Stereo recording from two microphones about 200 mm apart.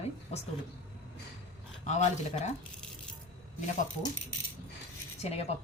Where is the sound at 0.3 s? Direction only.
30° left (ahead or behind).